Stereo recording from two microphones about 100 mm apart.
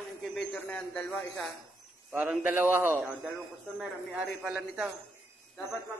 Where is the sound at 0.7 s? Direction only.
10° left (ahead or behind).